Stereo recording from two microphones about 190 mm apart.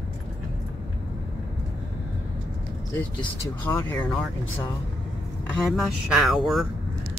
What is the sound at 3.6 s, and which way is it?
Speech, 15° left (ahead or behind).